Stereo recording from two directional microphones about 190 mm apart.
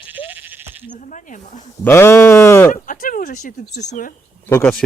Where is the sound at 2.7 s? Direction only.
45° left (ahead or behind).